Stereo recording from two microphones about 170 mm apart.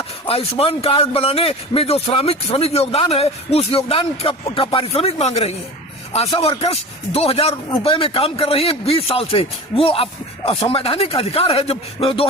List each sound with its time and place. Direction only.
0.3 s a man's voice: 35° left (ahead or behind)